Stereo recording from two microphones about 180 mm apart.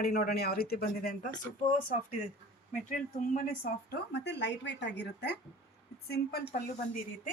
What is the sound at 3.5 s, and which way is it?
A woman's voice, 65° left (ahead or behind).